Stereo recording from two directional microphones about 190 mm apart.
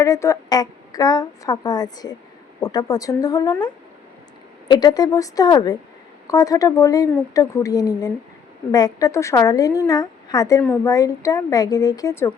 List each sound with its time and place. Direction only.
0.0 s a woman's voice: 15° left (ahead or behind)
4.7 s a woman's voice: 20° left (ahead or behind)